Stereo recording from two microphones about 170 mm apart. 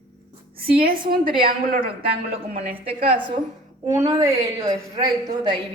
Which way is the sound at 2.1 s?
35° right (ahead or behind).